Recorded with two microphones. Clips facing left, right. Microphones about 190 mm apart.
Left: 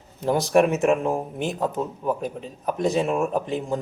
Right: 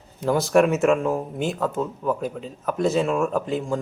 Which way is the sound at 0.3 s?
15° left (ahead or behind).